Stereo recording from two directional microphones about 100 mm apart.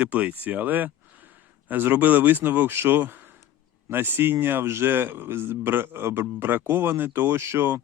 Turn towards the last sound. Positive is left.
turn(degrees=-25)  # may be behind; listen again after turning